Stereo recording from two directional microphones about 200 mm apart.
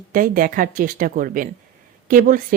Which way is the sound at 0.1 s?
45° right (ahead or behind).